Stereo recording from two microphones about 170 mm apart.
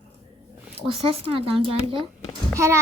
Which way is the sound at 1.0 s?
35° right (ahead or behind).